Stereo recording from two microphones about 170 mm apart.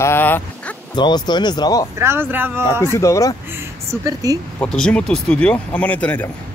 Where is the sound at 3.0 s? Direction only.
20° left (ahead or behind).